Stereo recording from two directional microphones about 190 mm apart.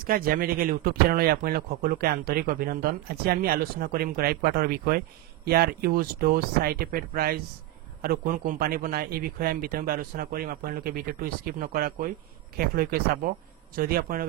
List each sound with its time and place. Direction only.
0.0 s speech: 50° right (ahead or behind)